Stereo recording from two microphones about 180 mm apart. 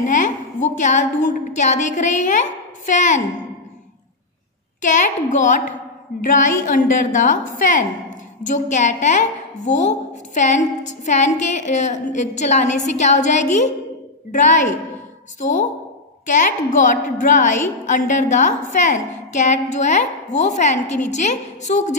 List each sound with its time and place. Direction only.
0.0 s a woman's voice: 45° left (ahead or behind)
4.8 s a woman's voice: 45° left (ahead or behind)
16.3 s a woman's voice: 45° left (ahead or behind)